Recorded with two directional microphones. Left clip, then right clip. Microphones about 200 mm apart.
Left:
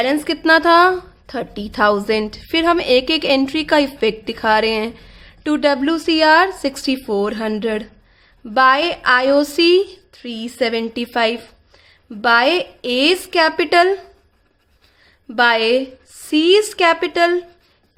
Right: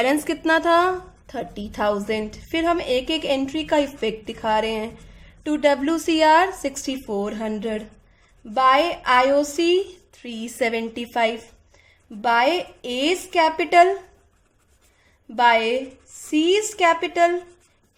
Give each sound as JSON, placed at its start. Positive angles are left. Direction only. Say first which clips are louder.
{"t": 0.3, "sound": "a woman's voice", "louder": "left 6 dB", "side_deg": 25}
{"t": 10.1, "sound": "a woman's voice", "louder": "left 5 dB", "side_deg": 25}
{"t": 15.4, "sound": "a woman's voice", "louder": "left 3 dB", "side_deg": 35}